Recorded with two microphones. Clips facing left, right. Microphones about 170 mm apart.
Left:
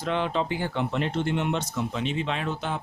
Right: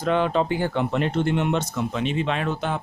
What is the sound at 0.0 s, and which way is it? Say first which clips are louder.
Speech: right 5 dB; 50° right (ahead or behind).